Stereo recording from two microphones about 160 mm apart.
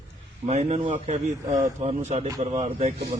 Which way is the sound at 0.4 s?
40° right (ahead or behind).